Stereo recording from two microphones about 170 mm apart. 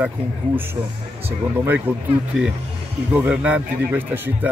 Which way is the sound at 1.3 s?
10° right (ahead or behind).